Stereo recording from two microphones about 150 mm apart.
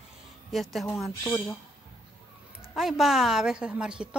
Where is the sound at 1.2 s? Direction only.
20° left (ahead or behind).